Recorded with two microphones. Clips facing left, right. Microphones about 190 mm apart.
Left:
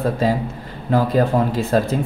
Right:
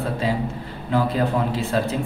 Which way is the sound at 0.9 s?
40° left (ahead or behind).